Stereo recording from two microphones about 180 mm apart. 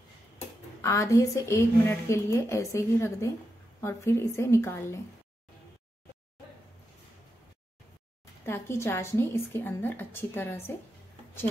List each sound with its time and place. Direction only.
0.8 s a woman's voice: 15° left (ahead or behind)
8.5 s a woman's voice: 15° left (ahead or behind)